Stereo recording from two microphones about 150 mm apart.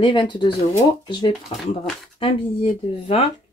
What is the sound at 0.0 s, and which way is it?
Speech, 35° left (ahead or behind).